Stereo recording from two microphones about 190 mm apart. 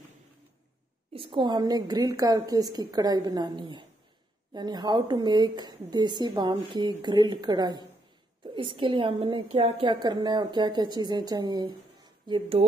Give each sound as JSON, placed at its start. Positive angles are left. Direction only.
{"t": 1.1, "sound": "a woman's voice", "side_deg": -25}